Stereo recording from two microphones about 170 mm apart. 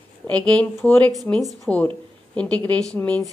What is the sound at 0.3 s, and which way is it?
A woman's voice, 5° left (ahead or behind).